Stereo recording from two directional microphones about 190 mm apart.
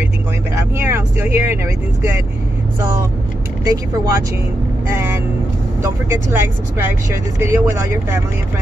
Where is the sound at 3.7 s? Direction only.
15° right (ahead or behind).